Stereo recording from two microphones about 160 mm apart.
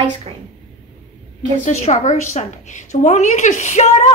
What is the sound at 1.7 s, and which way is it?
A woman's voice, 45° left (ahead or behind).